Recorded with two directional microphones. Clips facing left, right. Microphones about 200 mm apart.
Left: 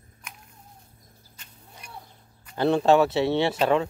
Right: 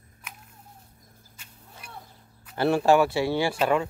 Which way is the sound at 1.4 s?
10° right (ahead or behind).